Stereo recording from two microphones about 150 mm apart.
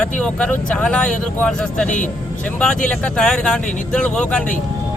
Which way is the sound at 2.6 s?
5° left (ahead or behind).